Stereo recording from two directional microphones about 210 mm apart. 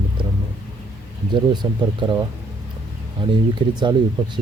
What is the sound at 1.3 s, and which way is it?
Speech, 20° right (ahead or behind).